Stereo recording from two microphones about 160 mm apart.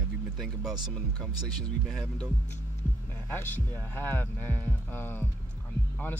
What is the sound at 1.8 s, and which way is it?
Speech, centre (ahead or behind).